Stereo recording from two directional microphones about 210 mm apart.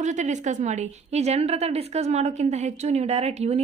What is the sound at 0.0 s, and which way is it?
A woman's voice, 35° right (ahead or behind).